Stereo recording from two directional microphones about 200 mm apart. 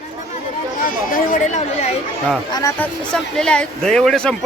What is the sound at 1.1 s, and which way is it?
Speech, 40° left (ahead or behind).